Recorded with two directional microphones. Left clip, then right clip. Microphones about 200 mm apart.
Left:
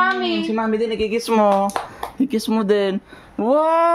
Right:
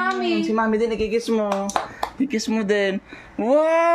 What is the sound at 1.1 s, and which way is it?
Speech, 50° left (ahead or behind).